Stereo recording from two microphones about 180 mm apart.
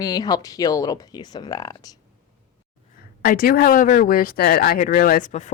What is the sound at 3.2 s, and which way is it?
Speech, 55° left (ahead or behind).